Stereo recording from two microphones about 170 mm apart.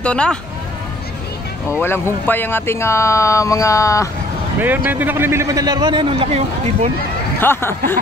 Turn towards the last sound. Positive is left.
turn(degrees=15)  # may be behind; listen again after turning